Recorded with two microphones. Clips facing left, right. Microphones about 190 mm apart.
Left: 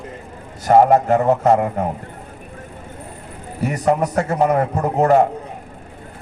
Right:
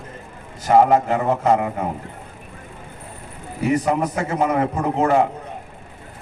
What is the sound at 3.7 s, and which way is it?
A man's voice, 40° left (ahead or behind).